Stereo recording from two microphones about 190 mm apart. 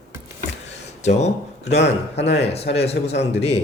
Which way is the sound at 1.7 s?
65° left (ahead or behind).